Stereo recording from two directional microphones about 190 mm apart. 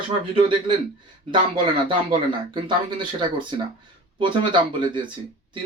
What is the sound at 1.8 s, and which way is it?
Speech, 25° right (ahead or behind).